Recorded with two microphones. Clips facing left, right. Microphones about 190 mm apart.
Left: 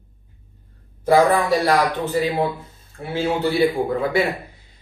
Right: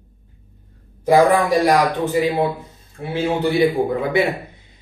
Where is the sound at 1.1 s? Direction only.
15° right (ahead or behind).